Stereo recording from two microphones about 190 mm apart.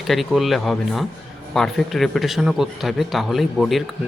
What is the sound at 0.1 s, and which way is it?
A man's voice, centre (ahead or behind).